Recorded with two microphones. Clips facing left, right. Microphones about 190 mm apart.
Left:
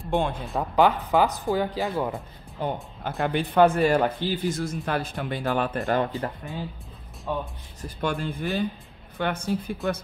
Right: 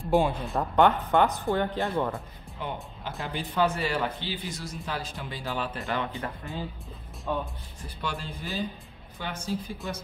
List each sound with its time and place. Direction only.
0.0 s speech: centre (ahead or behind)
2.6 s speech: 40° left (ahead or behind)
3.3 s a man's voice: 60° left (ahead or behind)
5.9 s speech: 35° left (ahead or behind)
7.3 s speech: centre (ahead or behind)
8.0 s a man's voice: 55° left (ahead or behind)